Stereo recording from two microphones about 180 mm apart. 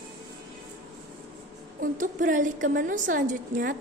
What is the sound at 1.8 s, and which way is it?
A woman's voice, 45° right (ahead or behind).